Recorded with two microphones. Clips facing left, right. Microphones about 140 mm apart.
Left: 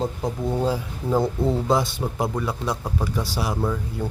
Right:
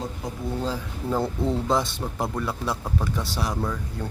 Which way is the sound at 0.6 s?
10° left (ahead or behind).